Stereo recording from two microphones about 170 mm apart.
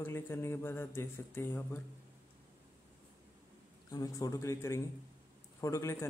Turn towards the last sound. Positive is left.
turn(degrees=15)  # may be behind; listen again after turning